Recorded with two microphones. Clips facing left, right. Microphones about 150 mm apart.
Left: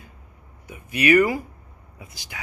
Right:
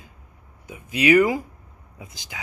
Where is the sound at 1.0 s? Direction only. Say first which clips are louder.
Right 1 dB; 15° right (ahead or behind).